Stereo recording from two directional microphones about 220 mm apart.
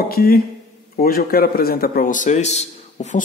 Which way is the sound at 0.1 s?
45° left (ahead or behind).